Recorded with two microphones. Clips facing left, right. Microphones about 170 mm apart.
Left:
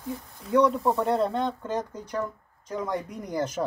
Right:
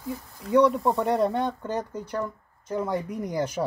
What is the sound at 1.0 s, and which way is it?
Speech, 10° right (ahead or behind).